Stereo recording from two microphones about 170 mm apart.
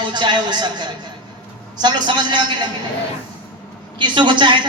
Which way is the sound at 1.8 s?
25° right (ahead or behind).